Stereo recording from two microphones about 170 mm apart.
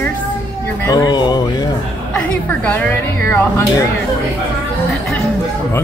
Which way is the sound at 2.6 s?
10° left (ahead or behind).